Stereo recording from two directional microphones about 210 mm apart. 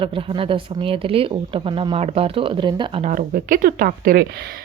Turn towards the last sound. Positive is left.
turn(degrees=-50)  # may be behind; listen again after turning